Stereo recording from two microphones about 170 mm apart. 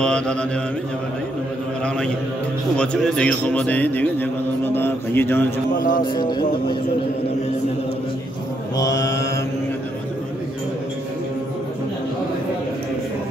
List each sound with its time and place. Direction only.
0.0 s mantra: 5° left (ahead or behind)
2.8 s a man's voice: 5° left (ahead or behind)
5.8 s music: 55° left (ahead or behind)
6.1 s music: 25° left (ahead or behind)
8.7 s music: 20° left (ahead or behind)